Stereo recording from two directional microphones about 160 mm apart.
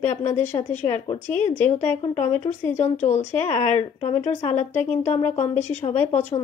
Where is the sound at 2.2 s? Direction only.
45° left (ahead or behind).